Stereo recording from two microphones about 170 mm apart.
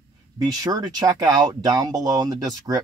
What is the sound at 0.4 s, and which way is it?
Speech, 25° right (ahead or behind).